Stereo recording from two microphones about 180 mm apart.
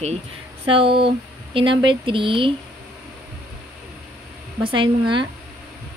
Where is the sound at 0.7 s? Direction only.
30° right (ahead or behind).